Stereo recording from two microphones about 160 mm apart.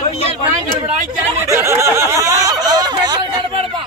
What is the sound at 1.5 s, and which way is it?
Snicker, 20° right (ahead or behind).